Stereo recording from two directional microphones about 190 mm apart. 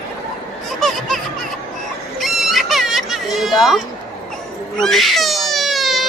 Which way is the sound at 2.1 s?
Centre (ahead or behind).